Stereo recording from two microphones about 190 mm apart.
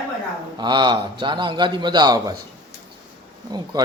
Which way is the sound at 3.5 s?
20° right (ahead or behind).